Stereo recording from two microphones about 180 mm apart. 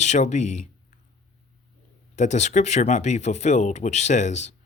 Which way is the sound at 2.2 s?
40° left (ahead or behind).